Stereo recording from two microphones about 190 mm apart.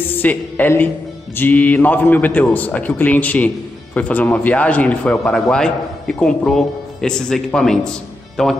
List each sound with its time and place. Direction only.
0.1 s a man's voice: 10° left (ahead or behind)